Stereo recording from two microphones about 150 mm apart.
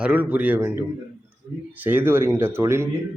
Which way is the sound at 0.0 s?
10° right (ahead or behind).